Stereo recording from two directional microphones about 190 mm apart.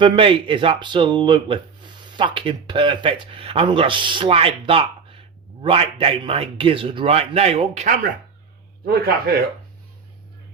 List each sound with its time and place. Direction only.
0.0 s speech: 25° right (ahead or behind)
8.9 s speech: 55° right (ahead or behind)